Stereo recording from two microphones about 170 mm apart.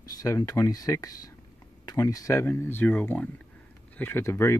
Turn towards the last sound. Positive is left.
turn(degrees=15)  # may be behind; listen again after turning